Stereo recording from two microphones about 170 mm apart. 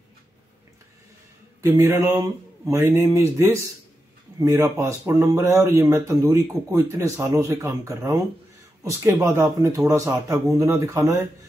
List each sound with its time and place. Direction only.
1.6 s speech: 15° right (ahead or behind)